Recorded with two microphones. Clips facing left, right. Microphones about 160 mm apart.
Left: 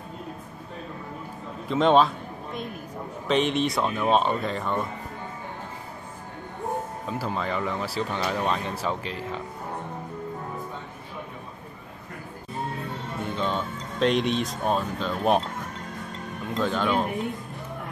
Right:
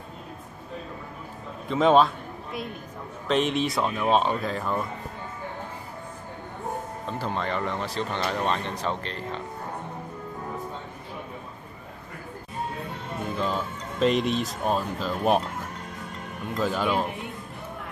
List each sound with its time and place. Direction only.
1.7 s speech: centre (ahead or behind)
7.1 s speech: 5° left (ahead or behind)
13.3 s speech: 5° right (ahead or behind)
16.5 s speech: 5° right (ahead or behind)